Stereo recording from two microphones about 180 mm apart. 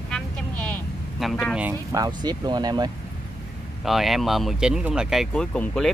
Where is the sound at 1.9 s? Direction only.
20° right (ahead or behind).